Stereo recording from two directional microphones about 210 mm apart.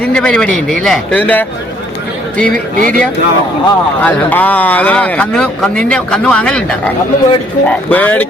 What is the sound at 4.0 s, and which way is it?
Speech, 10° left (ahead or behind).